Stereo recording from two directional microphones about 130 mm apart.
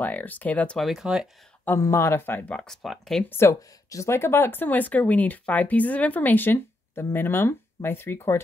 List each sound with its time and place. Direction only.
0.0 s speech: 15° left (ahead or behind); by 1.3 s 5° right (ahead or behind)
1.6 s speech: 20° left (ahead or behind); by 3.3 s centre (ahead or behind)
3.3 s speech: 20° left (ahead or behind)